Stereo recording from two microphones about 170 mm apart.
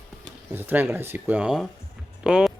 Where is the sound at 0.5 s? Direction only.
10° right (ahead or behind).